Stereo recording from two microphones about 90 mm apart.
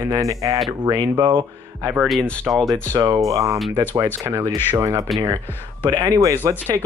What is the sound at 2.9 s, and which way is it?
Speech, 50° right (ahead or behind).